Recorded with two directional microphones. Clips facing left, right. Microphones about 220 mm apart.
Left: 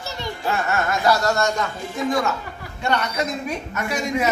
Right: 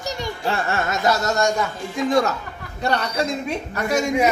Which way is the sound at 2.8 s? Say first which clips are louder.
Right 1 dB; 35° right (ahead or behind).